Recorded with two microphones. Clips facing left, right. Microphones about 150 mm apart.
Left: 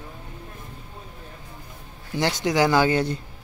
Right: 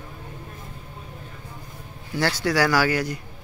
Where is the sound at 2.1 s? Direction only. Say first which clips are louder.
Even; 20° left (ahead or behind).